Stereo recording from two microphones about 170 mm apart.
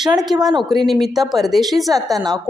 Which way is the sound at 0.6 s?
Centre (ahead or behind).